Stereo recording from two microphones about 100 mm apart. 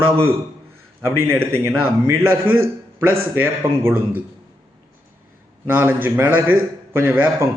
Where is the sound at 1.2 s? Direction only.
25° right (ahead or behind).